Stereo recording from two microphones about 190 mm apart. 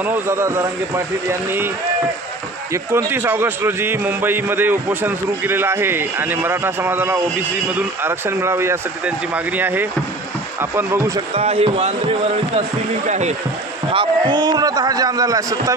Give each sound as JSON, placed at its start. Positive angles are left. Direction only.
{"t": 0.0, "sound": "a man's voice", "side_deg": -10}
{"t": 2.7, "sound": "a man's voice", "side_deg": -15}
{"t": 11.3, "sound": "speech", "side_deg": -30}
{"t": 13.9, "sound": "a man's voice", "side_deg": -25}